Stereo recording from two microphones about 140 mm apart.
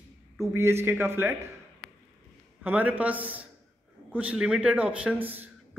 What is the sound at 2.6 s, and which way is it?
A man's voice, 10° right (ahead or behind).